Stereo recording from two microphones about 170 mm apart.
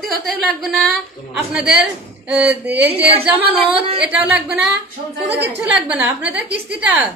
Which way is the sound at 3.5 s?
35° right (ahead or behind).